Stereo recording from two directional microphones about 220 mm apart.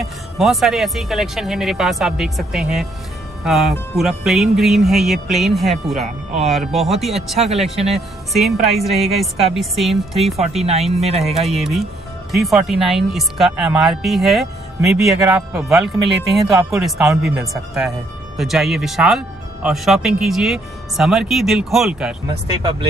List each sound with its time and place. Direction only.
0.0 s speech: centre (ahead or behind)
7.3 s speech: 30° right (ahead or behind)
7.9 s speech: centre (ahead or behind)
10.6 s speech: 30° right (ahead or behind)
11.2 s speech: centre (ahead or behind)